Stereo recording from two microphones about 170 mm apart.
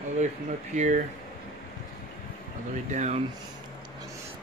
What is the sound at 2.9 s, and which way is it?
Speech, 45° right (ahead or behind).